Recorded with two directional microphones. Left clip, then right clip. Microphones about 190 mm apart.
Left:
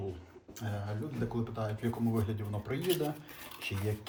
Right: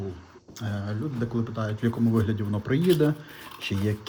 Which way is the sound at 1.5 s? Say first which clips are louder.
Right 9 dB; 40° right (ahead or behind).